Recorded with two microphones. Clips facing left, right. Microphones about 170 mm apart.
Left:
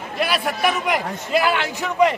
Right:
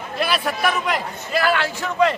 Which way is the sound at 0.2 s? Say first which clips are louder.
Left 1 dB; 15° left (ahead or behind).